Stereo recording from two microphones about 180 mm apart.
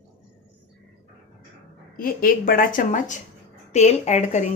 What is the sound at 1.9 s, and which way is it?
A woman's voice, 55° left (ahead or behind).